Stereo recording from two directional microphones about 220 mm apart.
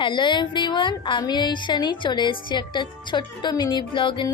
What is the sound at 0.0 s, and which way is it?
A woman's voice, 20° left (ahead or behind).